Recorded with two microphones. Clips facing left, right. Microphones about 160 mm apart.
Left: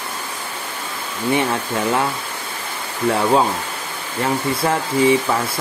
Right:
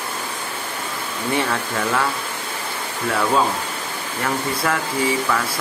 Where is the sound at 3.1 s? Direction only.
25° left (ahead or behind).